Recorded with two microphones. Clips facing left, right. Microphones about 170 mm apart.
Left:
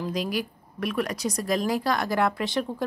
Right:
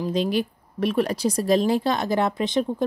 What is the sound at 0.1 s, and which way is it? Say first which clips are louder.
Speech: right 5 dB; 25° right (ahead or behind).